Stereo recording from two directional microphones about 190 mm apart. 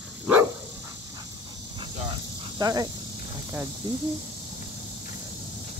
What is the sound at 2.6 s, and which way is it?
Speech, 20° right (ahead or behind).